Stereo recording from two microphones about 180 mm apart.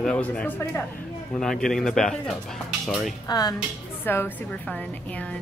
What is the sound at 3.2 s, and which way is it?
Speech, 20° left (ahead or behind).